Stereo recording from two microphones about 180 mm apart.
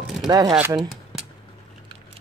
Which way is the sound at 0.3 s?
20° right (ahead or behind).